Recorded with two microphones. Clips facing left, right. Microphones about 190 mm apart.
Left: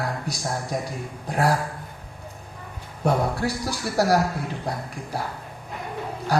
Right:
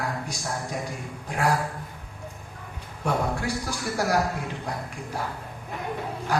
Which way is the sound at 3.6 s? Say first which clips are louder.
Left 7 dB; 35° left (ahead or behind).